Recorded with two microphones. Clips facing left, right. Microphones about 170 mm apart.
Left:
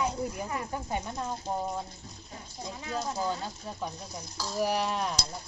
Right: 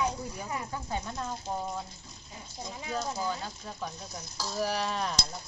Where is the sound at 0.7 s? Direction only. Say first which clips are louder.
Left 2 dB; 20° left (ahead or behind).